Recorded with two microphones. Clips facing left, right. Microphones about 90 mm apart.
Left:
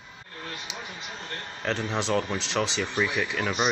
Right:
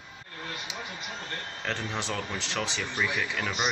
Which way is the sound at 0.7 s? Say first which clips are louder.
Even; 20° left (ahead or behind).